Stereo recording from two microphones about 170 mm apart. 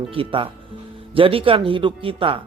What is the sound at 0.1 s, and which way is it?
A man's voice, 30° right (ahead or behind).